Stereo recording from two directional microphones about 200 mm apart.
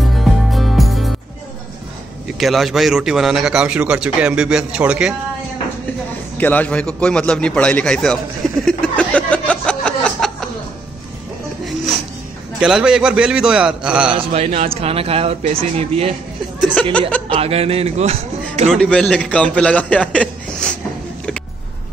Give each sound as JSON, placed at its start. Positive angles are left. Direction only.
{"t": 0.2, "sound": "music", "side_deg": 0}
{"t": 2.2, "sound": "speech", "side_deg": 0}
{"t": 6.3, "sound": "a man's voice", "side_deg": 10}
{"t": 12.5, "sound": "speech", "side_deg": -5}
{"t": 14.1, "sound": "speech", "side_deg": -30}
{"t": 17.3, "sound": "a man's voice", "side_deg": -30}
{"t": 18.7, "sound": "speech", "side_deg": 5}